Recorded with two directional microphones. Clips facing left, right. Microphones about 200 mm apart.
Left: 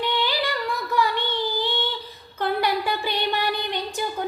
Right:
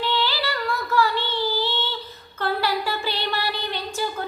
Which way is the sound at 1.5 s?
15° left (ahead or behind).